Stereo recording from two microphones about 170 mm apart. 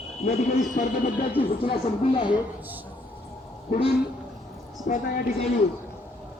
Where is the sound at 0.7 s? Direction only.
45° left (ahead or behind).